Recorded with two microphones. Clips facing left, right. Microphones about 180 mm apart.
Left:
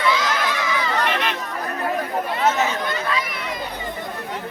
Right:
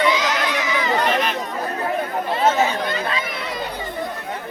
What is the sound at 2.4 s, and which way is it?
Chatter, 30° right (ahead or behind).